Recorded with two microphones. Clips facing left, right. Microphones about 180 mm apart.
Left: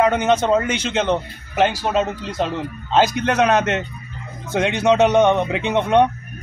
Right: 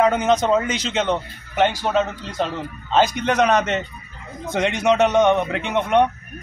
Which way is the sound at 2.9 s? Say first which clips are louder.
Left 1 dB; 5° left (ahead or behind).